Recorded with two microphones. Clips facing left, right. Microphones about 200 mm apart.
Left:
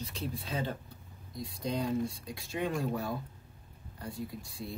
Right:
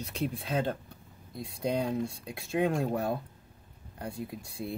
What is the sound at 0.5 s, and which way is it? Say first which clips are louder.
Speech: right 5 dB; 55° right (ahead or behind).